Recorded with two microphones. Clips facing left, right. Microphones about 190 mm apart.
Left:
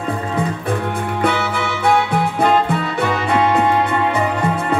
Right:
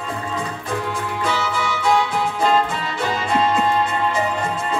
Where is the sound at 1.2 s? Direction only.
60° left (ahead or behind).